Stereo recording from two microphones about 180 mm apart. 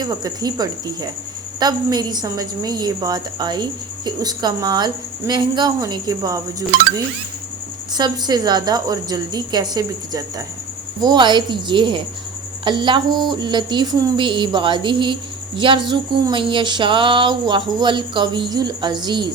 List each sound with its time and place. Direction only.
0.0 s a woman's voice: 20° right (ahead or behind)
7.9 s a woman's voice: 20° right (ahead or behind)